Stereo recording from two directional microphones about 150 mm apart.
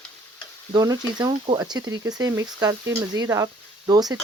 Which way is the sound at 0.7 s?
25° right (ahead or behind).